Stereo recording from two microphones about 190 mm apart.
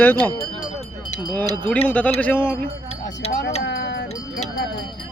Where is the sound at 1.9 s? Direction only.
10° left (ahead or behind).